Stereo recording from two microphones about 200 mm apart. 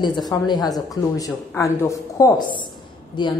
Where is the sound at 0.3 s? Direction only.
20° left (ahead or behind).